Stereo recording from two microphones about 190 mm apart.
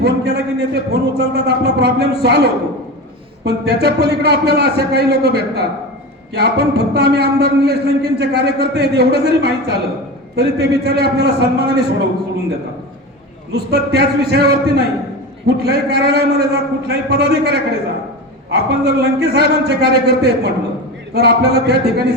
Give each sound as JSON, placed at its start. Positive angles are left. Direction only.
{"t": 0.0, "sound": "a man's voice", "side_deg": -60}
{"t": 13.5, "sound": "a man's voice", "side_deg": -60}